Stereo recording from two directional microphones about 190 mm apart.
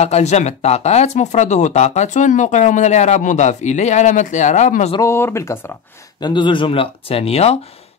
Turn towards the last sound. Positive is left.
turn(degrees=30)  # may be behind; listen again after turning